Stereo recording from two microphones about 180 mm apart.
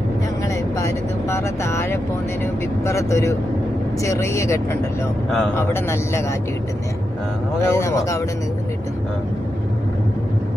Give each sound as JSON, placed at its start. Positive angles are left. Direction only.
{"t": 0.7, "sound": "speech", "side_deg": 15}
{"t": 5.7, "sound": "speech", "side_deg": 15}
{"t": 7.6, "sound": "speech", "side_deg": 15}